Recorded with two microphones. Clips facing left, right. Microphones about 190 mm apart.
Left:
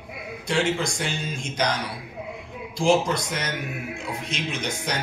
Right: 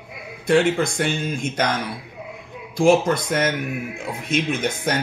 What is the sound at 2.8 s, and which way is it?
Speech, 55° right (ahead or behind).